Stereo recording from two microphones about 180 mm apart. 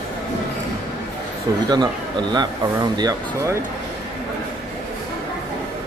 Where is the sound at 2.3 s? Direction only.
25° right (ahead or behind).